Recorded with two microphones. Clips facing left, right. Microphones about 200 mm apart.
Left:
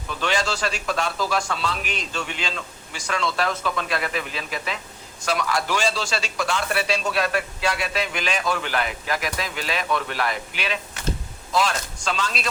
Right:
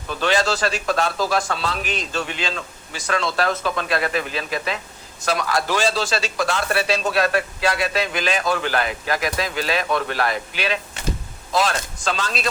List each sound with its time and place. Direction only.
0.1 s a man's voice: 35° right (ahead or behind)
12.0 s a man's voice: 40° right (ahead or behind)